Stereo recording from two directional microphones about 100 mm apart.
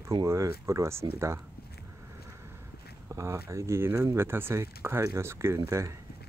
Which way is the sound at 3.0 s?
25° right (ahead or behind).